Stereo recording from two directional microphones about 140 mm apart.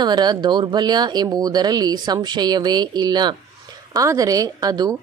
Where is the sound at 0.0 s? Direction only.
30° right (ahead or behind).